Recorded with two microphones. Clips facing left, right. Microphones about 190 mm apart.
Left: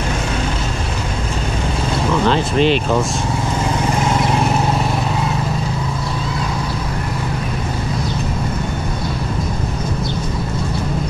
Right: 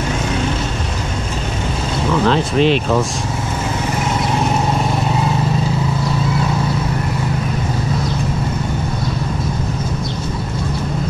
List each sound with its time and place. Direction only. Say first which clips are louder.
2.2 s speech: right 1 dB; centre (ahead or behind)